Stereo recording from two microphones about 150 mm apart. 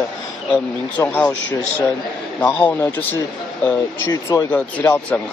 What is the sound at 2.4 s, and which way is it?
Speech, 10° left (ahead or behind).